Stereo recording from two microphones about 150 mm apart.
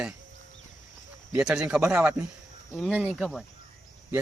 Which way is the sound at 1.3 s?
5° right (ahead or behind).